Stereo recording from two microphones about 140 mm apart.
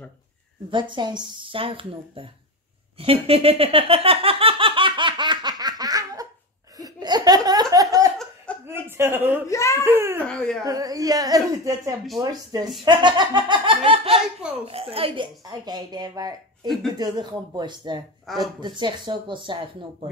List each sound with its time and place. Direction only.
0.7 s speech: 35° right (ahead or behind)
3.0 s a sound: 45° right (ahead or behind); by 6.2 s 25° right (ahead or behind)
6.8 s laughter: 30° right (ahead or behind)
8.6 s speech: 15° right (ahead or behind)
9.5 s a child's voice: 20° left (ahead or behind)
9.8 s speech: 15° right (ahead or behind)
10.2 s speech: 5° left (ahead or behind)
10.6 s a child's voice: 25° right (ahead or behind); by 15.2 s 40° right (ahead or behind)
15.4 s speech: 30° right (ahead or behind)